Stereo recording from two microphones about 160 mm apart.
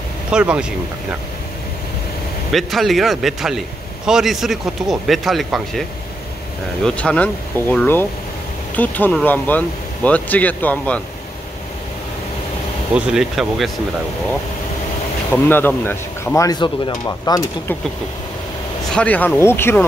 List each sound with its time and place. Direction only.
0.3 s speech: 5° right (ahead or behind)
2.5 s speech: centre (ahead or behind)
12.9 s speech: 5° right (ahead or behind)
15.3 s speech: 10° left (ahead or behind)
18.9 s speech: 10° left (ahead or behind)